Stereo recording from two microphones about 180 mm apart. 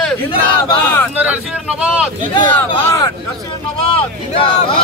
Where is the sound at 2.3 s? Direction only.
25° left (ahead or behind).